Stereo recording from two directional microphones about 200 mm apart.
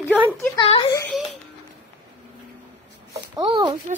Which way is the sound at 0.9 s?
10° left (ahead or behind).